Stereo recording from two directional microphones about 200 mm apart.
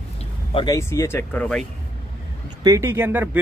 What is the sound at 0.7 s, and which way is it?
Speech, 15° left (ahead or behind).